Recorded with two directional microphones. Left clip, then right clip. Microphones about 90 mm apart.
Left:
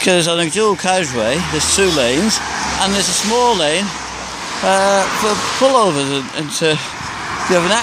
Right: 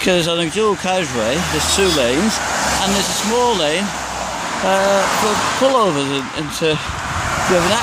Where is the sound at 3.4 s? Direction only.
40° left (ahead or behind).